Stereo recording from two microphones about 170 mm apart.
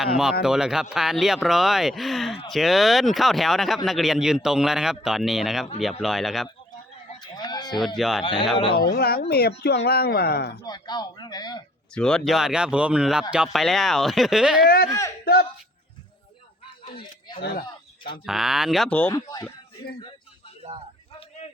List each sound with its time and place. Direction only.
0.0 s speech: 5° right (ahead or behind)
7.2 s a sound: 25° left (ahead or behind)
7.9 s speech: centre (ahead or behind)
8.2 s a man's voice: 30° left (ahead or behind)
8.9 s speech: 65° left (ahead or behind)
10.7 s a man's voice: 25° left (ahead or behind)
11.9 s speech: 5° left (ahead or behind)
15.2 s speech: 65° left (ahead or behind)
16.6 s a sound: 30° left (ahead or behind)
18.3 s speech: 5° right (ahead or behind)
19.1 s a man's voice: 20° left (ahead or behind)
21.2 s a sound: 40° left (ahead or behind)